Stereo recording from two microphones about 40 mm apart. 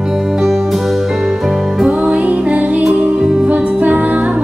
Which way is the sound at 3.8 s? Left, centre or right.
Right.